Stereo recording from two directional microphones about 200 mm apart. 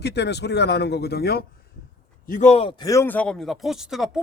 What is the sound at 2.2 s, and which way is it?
A man's voice, 40° left (ahead or behind).